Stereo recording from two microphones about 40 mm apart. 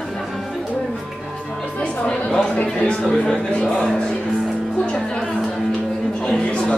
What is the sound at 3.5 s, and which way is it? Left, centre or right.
Music, left.